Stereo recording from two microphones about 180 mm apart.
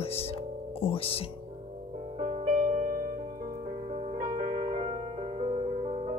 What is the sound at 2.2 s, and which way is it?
Music, 45° right (ahead or behind).